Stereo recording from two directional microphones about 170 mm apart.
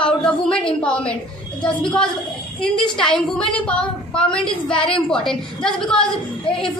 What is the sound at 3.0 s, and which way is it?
Speech, 30° left (ahead or behind).